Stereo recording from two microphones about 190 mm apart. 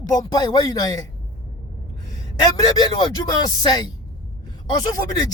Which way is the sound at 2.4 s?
20° left (ahead or behind).